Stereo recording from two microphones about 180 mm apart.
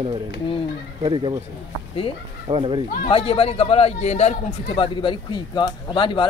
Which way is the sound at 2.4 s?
30° right (ahead or behind).